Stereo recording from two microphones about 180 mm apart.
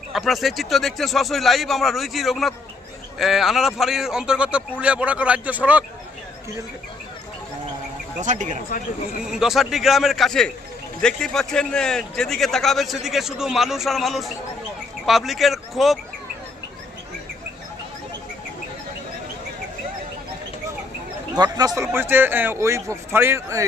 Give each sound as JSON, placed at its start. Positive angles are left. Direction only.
{"t": 0.1, "sound": "a man's voice", "side_deg": 0}
{"t": 8.2, "sound": "speech", "side_deg": -40}
{"t": 9.2, "sound": "a man's voice", "side_deg": 0}
{"t": 21.3, "sound": "speech", "side_deg": -20}